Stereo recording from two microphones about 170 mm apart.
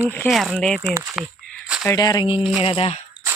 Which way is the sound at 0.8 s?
20° right (ahead or behind).